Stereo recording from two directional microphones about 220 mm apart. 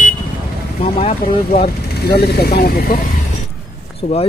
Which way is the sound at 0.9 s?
25° left (ahead or behind).